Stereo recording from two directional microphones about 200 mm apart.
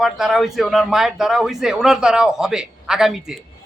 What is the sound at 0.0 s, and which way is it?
Speech, centre (ahead or behind).